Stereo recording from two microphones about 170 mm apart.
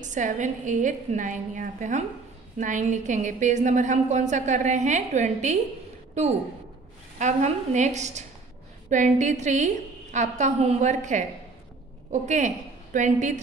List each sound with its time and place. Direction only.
0.0 s a woman's voice: 45° right (ahead or behind)
7.2 s a woman's voice: 45° right (ahead or behind)